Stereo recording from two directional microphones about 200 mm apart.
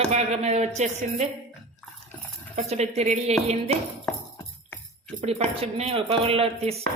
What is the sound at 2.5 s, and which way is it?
Speech, 35° right (ahead or behind).